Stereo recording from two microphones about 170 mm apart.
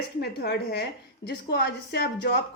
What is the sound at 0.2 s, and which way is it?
Speech, 70° left (ahead or behind).